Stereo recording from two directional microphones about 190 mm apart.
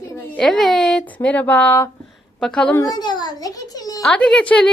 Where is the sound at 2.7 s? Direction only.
20° left (ahead or behind).